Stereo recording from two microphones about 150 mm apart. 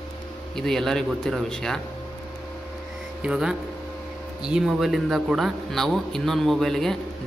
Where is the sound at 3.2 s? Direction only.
5° right (ahead or behind).